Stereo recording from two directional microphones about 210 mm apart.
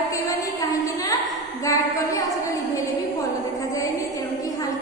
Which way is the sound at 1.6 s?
15° left (ahead or behind).